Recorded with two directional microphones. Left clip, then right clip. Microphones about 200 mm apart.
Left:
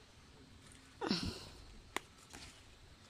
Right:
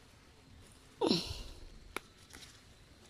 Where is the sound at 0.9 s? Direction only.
20° right (ahead or behind).